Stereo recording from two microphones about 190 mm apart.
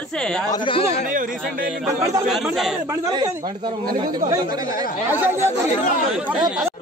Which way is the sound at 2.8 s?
20° right (ahead or behind).